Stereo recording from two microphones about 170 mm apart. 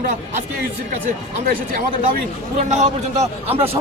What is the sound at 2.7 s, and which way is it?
A man's voice, 40° right (ahead or behind).